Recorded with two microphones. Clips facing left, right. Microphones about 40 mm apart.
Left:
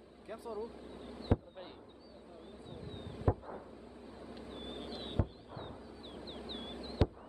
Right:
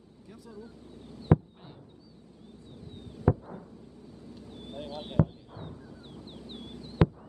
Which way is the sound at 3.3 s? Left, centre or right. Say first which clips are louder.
Right 6 dB; centre.